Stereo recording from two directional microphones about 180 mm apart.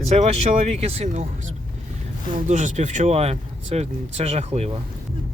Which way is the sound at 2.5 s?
40° right (ahead or behind).